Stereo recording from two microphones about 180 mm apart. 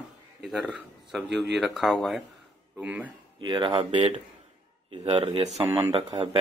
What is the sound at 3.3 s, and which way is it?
Speech, 25° right (ahead or behind).